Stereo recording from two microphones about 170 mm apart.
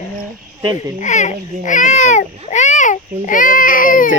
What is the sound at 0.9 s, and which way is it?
Speech, 45° left (ahead or behind).